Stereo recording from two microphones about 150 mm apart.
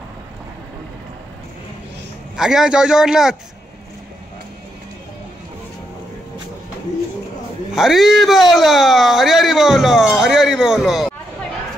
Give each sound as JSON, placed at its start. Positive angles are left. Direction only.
{"t": 2.3, "sound": "speech", "side_deg": -5}
{"t": 7.7, "sound": "speech", "side_deg": 0}